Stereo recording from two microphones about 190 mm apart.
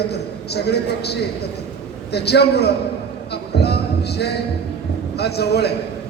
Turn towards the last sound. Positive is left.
turn(degrees=60)  # may be behind; listen again after turning